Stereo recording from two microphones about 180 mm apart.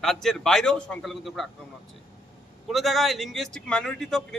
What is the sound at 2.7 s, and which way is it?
Speech, centre (ahead or behind).